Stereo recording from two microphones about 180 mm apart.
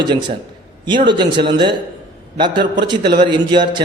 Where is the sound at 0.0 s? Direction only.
25° right (ahead or behind).